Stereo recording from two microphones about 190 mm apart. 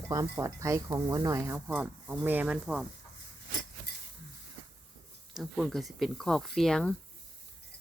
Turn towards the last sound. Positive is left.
turn(degrees=5)  # may be behind; listen again after turning